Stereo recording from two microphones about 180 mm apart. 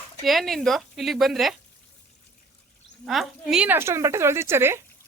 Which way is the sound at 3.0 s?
Centre (ahead or behind).